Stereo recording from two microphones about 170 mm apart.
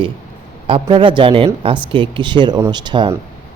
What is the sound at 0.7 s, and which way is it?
Speech, 30° right (ahead or behind).